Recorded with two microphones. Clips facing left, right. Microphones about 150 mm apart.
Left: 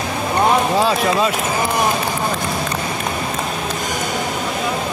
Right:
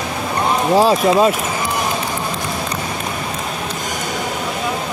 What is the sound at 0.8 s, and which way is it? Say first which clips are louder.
Speech: right 4 dB; 40° right (ahead or behind).